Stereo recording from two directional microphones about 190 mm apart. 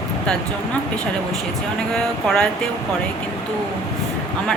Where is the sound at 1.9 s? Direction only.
5° left (ahead or behind).